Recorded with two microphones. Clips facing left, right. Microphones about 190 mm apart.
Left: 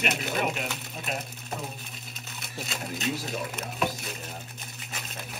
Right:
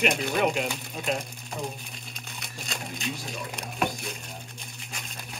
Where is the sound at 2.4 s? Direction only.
5° left (ahead or behind).